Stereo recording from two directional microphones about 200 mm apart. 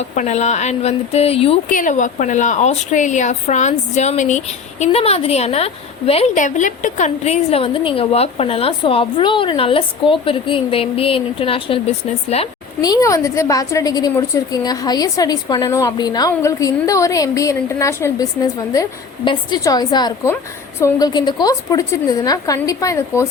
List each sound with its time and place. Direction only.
0.0 s a woman's voice: 35° left (ahead or behind)
1.7 s a woman's voice: 40° left (ahead or behind)
12.8 s a woman's voice: 15° left (ahead or behind)